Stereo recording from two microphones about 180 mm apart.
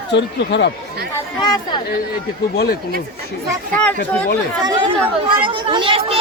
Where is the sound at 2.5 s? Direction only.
65° left (ahead or behind).